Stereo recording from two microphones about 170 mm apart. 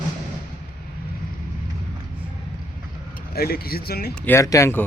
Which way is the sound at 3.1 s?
65° left (ahead or behind).